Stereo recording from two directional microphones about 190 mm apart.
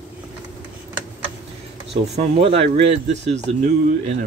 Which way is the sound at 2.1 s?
35° right (ahead or behind).